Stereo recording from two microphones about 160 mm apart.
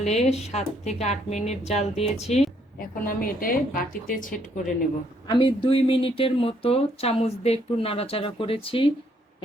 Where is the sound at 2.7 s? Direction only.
60° left (ahead or behind).